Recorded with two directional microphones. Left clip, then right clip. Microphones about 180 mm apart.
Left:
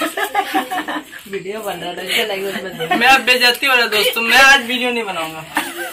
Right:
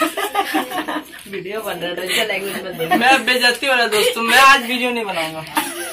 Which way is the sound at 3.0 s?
Centre (ahead or behind).